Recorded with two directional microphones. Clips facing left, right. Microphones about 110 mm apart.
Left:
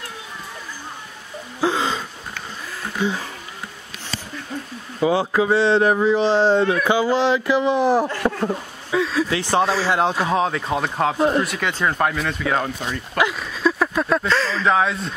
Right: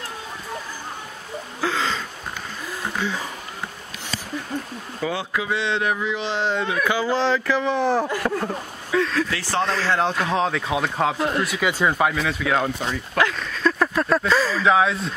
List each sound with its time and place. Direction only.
1.6 s a sound: 20° left (ahead or behind)
3.0 s speech: 15° left (ahead or behind)
5.0 s speech: 35° left (ahead or behind); by 9.3 s 5° left (ahead or behind)
9.3 s speech: 20° left (ahead or behind); by 11.1 s centre (ahead or behind)
11.1 s speech: 25° left (ahead or behind)
11.4 s speech: 5° right (ahead or behind)
13.2 s speech: 10° left (ahead or behind)